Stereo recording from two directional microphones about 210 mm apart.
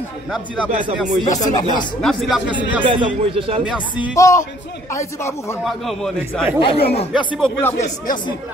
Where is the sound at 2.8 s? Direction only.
25° right (ahead or behind).